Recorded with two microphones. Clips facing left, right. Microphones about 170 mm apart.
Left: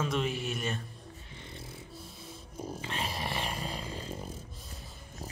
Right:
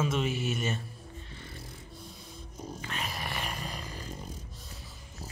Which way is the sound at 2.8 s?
30° left (ahead or behind).